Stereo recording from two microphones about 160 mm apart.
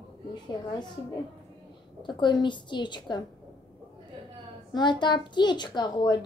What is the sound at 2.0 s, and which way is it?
Speech, 30° left (ahead or behind).